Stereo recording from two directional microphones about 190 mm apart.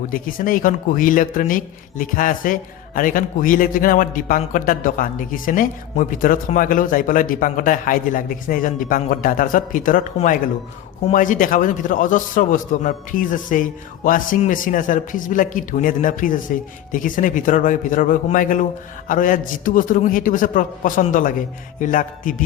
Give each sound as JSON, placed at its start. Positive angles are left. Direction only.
{"t": 0.1, "sound": "speech", "side_deg": 45}